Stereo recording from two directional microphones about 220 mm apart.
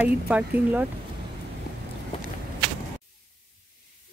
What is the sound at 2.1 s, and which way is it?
Walk, 25° left (ahead or behind).